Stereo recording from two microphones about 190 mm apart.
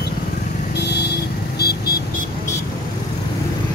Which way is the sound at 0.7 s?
60° left (ahead or behind).